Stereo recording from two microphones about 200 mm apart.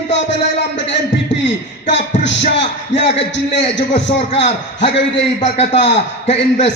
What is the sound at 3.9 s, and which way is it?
A man's voice, 30° left (ahead or behind).